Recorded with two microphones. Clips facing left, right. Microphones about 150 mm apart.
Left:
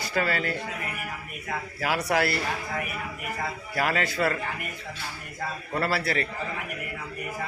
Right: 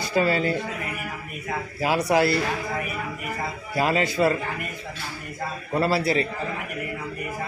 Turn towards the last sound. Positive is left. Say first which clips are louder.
# right 5 dB
turn(degrees=-20)  # may be behind; listen again after turning